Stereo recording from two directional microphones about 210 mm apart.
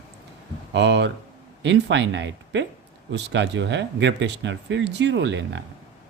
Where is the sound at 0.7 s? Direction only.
55° right (ahead or behind).